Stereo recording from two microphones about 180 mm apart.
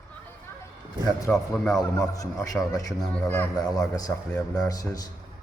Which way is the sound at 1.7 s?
20° left (ahead or behind).